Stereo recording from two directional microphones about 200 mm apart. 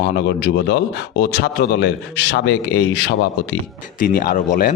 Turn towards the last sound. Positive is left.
turn(degrees=40)  # may be behind; listen again after turning